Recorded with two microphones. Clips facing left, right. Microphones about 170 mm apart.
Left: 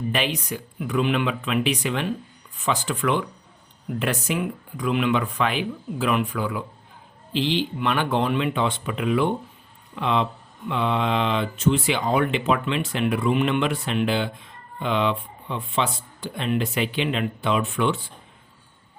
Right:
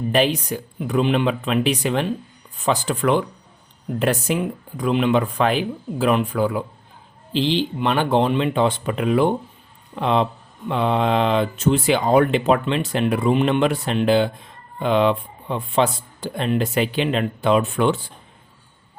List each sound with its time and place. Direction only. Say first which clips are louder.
0.1 s speech: right 10 dB; 35° right (ahead or behind)
8.5 s speech: right 5 dB; 40° right (ahead or behind)